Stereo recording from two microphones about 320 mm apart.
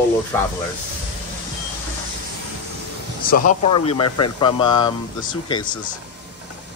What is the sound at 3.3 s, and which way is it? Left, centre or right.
Speech, left.